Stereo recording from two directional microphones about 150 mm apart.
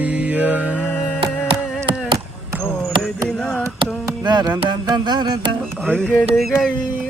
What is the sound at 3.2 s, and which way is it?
Carnatic music, 5° left (ahead or behind).